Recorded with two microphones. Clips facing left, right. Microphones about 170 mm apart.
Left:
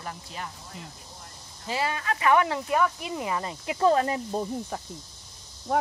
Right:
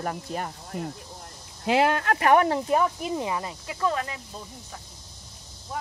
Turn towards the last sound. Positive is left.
turn(degrees=65)  # may be behind; listen again after turning